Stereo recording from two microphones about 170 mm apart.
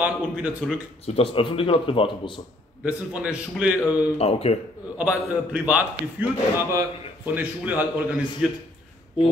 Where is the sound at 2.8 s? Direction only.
10° right (ahead or behind).